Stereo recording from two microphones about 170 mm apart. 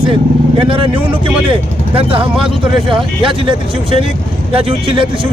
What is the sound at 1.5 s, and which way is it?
A man's voice, 30° right (ahead or behind).